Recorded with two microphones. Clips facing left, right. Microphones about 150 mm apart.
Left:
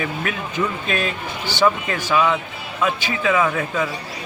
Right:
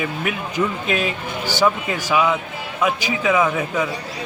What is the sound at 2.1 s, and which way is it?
A man's voice, 10° right (ahead or behind).